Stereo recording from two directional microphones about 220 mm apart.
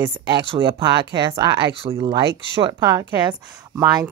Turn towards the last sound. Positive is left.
turn(degrees=-15)  # may be behind; listen again after turning